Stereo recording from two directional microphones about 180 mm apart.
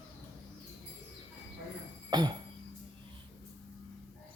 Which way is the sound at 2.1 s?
25° right (ahead or behind).